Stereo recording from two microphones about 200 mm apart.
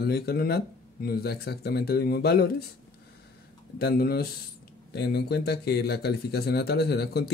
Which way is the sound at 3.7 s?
50° left (ahead or behind).